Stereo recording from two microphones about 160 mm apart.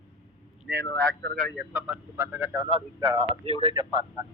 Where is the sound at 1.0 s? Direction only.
75° right (ahead or behind).